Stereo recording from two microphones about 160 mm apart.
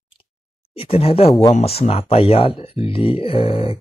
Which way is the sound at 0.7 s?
35° left (ahead or behind).